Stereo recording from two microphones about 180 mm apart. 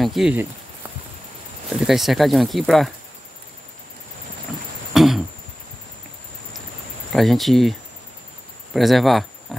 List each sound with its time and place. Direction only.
0.0 s speech: centre (ahead or behind)
1.7 s speech: centre (ahead or behind)
4.9 s throat clearing: centre (ahead or behind)
7.1 s speech: centre (ahead or behind)
8.7 s speech: centre (ahead or behind)